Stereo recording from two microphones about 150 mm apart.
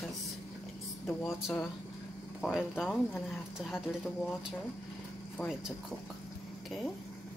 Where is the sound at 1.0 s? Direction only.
20° left (ahead or behind).